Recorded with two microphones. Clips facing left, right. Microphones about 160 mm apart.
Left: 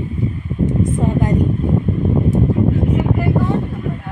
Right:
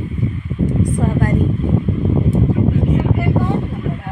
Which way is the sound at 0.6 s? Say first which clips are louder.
Left 1 dB; 20° left (ahead or behind).